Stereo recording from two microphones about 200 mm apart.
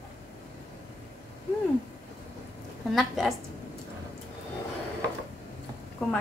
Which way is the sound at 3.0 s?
Centre (ahead or behind).